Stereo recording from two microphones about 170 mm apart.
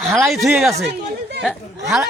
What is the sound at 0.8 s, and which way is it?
Speech, 75° right (ahead or behind).